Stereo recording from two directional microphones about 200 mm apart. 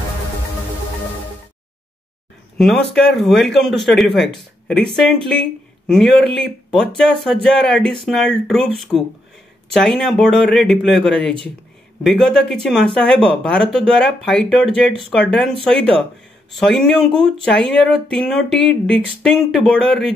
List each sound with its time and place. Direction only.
2.5 s speech: centre (ahead or behind)